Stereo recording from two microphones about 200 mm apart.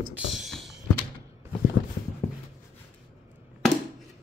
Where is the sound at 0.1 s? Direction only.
Centre (ahead or behind).